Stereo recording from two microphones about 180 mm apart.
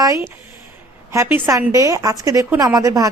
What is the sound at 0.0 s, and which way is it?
Speech, 15° right (ahead or behind).